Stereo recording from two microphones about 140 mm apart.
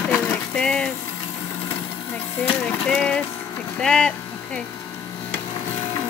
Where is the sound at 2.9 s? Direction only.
5° left (ahead or behind).